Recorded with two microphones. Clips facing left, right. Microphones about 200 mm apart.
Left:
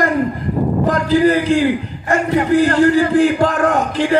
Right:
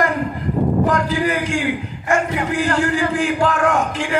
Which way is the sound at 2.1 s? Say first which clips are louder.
Left 5 dB; 35° left (ahead or behind).